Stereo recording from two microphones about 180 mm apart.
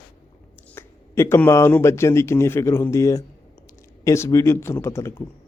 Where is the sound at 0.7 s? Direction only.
15° left (ahead or behind).